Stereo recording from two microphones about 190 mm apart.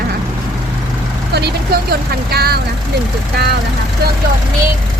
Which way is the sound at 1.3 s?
55° right (ahead or behind).